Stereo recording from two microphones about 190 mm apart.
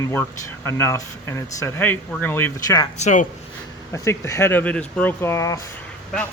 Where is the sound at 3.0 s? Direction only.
40° left (ahead or behind).